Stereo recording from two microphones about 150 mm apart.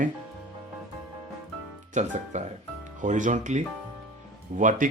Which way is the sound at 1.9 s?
50° right (ahead or behind).